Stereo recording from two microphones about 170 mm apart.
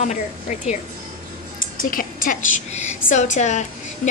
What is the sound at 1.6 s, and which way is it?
A woman's voice, 55° left (ahead or behind).